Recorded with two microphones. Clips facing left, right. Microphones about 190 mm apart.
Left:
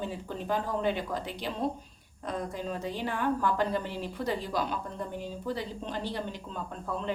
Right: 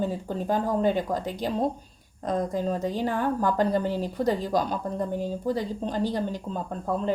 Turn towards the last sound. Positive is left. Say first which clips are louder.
# right 6 dB
turn(degrees=-40)  # may be behind; listen again after turning